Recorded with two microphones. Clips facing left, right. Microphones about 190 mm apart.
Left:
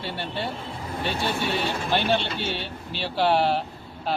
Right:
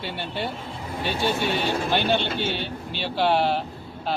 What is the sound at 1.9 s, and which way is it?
Speech, centre (ahead or behind).